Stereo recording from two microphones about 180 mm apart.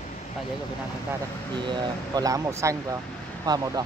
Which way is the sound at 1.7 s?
20° right (ahead or behind).